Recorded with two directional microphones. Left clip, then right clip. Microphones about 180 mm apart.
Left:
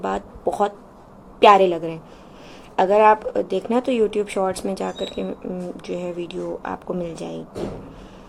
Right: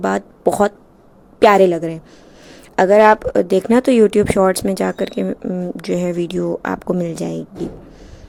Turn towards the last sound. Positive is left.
turn(degrees=-50)  # may be behind; listen again after turning